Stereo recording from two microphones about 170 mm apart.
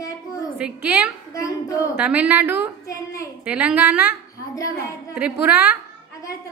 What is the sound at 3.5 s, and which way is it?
Speech, 10° right (ahead or behind).